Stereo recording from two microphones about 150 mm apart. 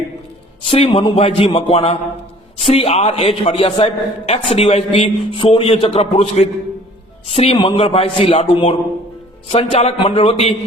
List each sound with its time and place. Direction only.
0.6 s a man's voice: 40° left (ahead or behind)